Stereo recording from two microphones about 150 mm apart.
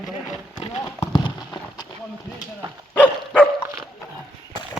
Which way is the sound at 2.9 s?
10° left (ahead or behind).